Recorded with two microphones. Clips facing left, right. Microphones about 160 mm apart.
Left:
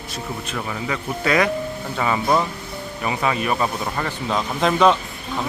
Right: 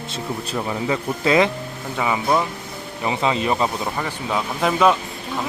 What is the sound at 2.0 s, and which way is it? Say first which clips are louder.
Speech: even; 10° right (ahead or behind).